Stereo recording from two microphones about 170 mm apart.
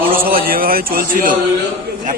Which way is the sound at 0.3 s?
60° right (ahead or behind).